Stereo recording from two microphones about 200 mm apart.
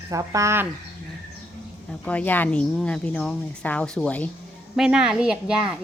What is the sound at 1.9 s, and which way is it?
A child's voice, 5° left (ahead or behind).